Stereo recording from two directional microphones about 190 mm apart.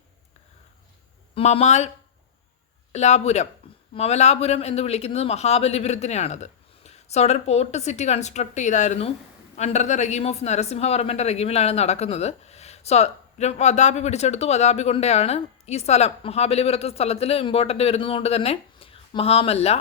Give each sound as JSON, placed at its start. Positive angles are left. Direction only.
{"t": 1.4, "sound": "speech", "side_deg": 35}
{"t": 2.9, "sound": "speech", "side_deg": 35}